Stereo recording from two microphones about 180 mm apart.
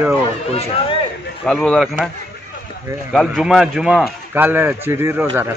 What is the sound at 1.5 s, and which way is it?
Speech, centre (ahead or behind).